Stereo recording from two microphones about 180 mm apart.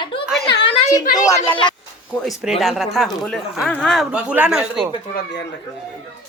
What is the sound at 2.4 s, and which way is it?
Speech, centre (ahead or behind).